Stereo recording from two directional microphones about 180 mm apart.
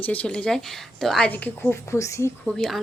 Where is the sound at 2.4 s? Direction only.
5° left (ahead or behind).